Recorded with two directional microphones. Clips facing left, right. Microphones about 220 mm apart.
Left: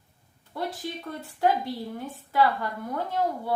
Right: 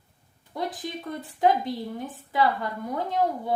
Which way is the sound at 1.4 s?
20° right (ahead or behind).